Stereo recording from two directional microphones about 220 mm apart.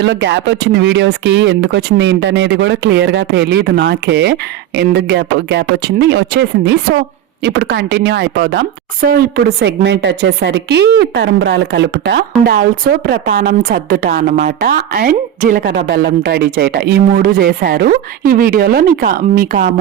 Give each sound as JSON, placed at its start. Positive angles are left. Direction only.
{"t": 0.0, "sound": "a woman's voice", "side_deg": -55}